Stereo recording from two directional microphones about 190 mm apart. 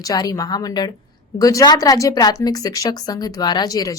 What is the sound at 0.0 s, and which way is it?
A woman's voice, 20° left (ahead or behind).